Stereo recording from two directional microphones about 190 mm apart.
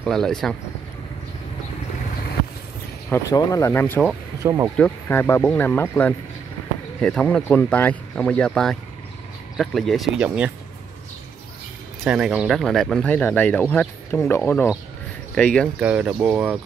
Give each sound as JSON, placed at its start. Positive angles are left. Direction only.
{"t": 0.0, "sound": "speech", "side_deg": 0}
{"t": 3.1, "sound": "speech", "side_deg": 15}
{"t": 4.4, "sound": "speech", "side_deg": -15}
{"t": 4.7, "sound": "speech", "side_deg": 10}
{"t": 12.0, "sound": "speech", "side_deg": -5}
{"t": 15.8, "sound": "speech", "side_deg": -5}